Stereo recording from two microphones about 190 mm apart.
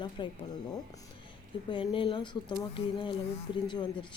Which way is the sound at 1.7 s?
25° left (ahead or behind).